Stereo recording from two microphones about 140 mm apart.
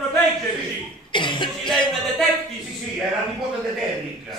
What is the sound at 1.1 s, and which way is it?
Cough, 35° left (ahead or behind).